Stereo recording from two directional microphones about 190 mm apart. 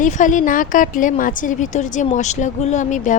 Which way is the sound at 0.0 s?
40° left (ahead or behind).